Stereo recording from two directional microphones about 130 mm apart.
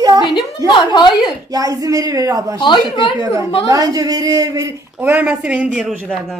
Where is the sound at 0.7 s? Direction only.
35° left (ahead or behind).